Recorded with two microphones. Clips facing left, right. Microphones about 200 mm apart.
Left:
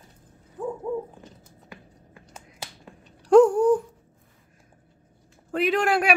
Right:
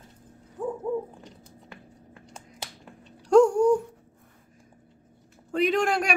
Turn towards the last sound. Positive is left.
turn(degrees=5)  # may be behind; listen again after turning